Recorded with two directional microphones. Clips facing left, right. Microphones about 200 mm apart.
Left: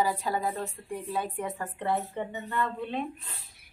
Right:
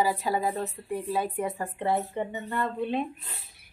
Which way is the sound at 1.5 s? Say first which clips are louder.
Even; 25° right (ahead or behind).